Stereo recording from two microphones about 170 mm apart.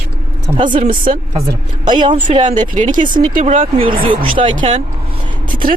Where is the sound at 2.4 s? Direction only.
50° right (ahead or behind); by 4.6 s 30° right (ahead or behind).